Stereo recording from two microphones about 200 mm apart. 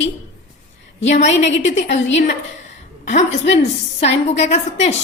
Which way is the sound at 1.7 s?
35° left (ahead or behind).